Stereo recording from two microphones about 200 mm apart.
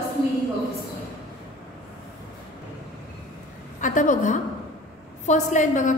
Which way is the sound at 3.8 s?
40° left (ahead or behind).